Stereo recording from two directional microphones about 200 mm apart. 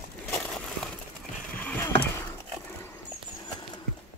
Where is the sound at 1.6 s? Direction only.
10° left (ahead or behind).